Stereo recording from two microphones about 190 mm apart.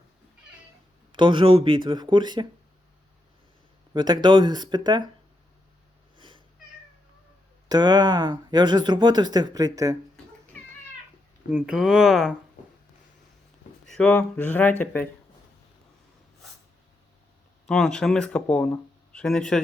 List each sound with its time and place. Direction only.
1.1 s speech: 25° right (ahead or behind)
3.9 s speech: 25° right (ahead or behind)
7.7 s speech: 20° right (ahead or behind)
11.5 s speech: 5° right (ahead or behind)
13.8 s speech: 5° left (ahead or behind)
17.7 s speech: 5° left (ahead or behind)